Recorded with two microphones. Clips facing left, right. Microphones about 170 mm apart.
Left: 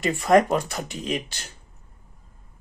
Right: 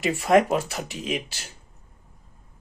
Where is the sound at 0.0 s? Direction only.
5° right (ahead or behind).